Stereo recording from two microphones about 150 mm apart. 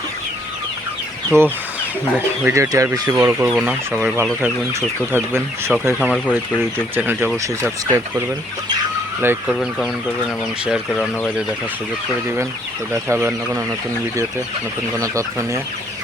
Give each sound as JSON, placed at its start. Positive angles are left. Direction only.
{"t": 1.3, "sound": "speech", "side_deg": -15}
{"t": 6.0, "sound": "speech", "side_deg": 10}
{"t": 6.7, "sound": "speech", "side_deg": -15}
{"t": 9.2, "sound": "speech", "side_deg": -15}
{"t": 9.8, "sound": "speech", "side_deg": 0}
{"t": 12.9, "sound": "speech", "side_deg": -15}
{"t": 14.9, "sound": "speech", "side_deg": -20}